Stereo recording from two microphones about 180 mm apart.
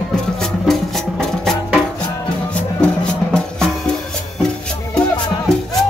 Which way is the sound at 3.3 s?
5° left (ahead or behind).